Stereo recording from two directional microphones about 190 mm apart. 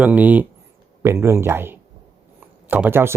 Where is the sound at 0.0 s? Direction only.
10° right (ahead or behind).